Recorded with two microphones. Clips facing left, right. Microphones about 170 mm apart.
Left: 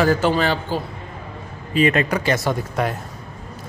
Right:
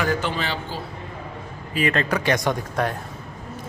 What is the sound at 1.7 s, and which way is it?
Speech, 25° left (ahead or behind).